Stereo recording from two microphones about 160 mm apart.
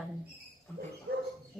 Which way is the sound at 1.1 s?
70° right (ahead or behind).